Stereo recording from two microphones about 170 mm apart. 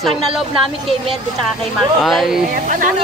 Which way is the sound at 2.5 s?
50° right (ahead or behind).